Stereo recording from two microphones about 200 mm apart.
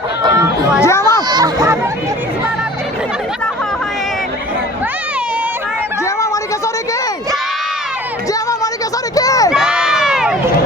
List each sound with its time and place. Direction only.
0.2 s chatter: 15° right (ahead or behind)
0.8 s a child's voice: 15° left (ahead or behind)
1.3 s speech: 20° right (ahead or behind)
8.3 s music: 15° left (ahead or behind)
9.1 s a sound: 15° left (ahead or behind)
9.5 s crowd: 5° right (ahead or behind)